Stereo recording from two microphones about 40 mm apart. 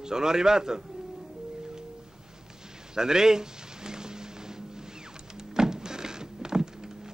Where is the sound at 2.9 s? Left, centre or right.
Centre.